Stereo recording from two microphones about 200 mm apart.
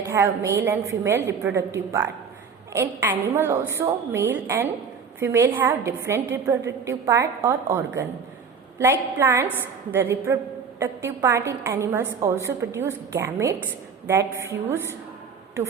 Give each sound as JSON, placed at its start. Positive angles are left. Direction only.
{"t": 0.1, "sound": "a woman's voice", "side_deg": -15}